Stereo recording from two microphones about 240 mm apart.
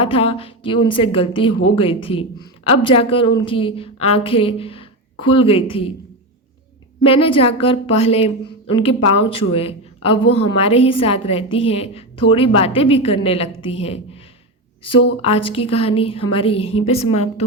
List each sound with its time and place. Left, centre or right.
0.0 s a woman's voice: left
7.0 s a woman's voice: left
15.2 s a woman's voice: left